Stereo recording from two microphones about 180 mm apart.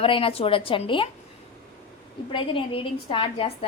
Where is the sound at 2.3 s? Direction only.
30° left (ahead or behind).